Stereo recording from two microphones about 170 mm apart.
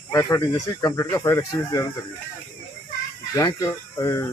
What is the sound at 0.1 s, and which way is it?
Speech, 15° left (ahead or behind).